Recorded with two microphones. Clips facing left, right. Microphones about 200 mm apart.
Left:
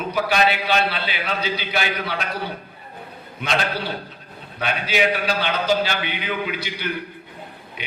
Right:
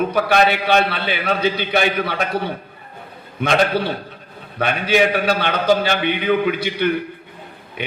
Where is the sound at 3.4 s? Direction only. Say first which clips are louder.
Right 7 dB; 50° right (ahead or behind).